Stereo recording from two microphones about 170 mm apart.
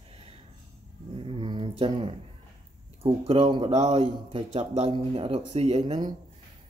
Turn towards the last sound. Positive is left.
turn(degrees=-35)  # may be behind; listen again after turning